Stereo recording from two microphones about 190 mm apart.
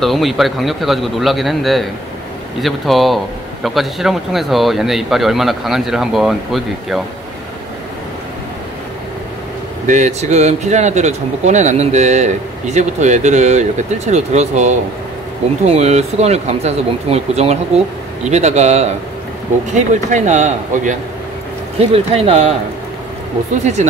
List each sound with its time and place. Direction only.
0.0 s speech: centre (ahead or behind)
9.8 s speech: 40° right (ahead or behind)
23.6 s speech: 35° right (ahead or behind)